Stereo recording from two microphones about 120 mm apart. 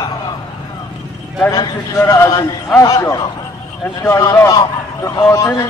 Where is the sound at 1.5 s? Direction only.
30° left (ahead or behind).